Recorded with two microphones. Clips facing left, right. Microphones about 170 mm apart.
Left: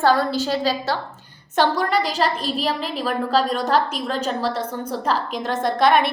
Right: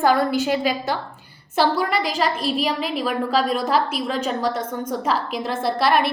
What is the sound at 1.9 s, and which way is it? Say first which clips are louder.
A woman's voice: left 1 dB; 40° left (ahead or behind).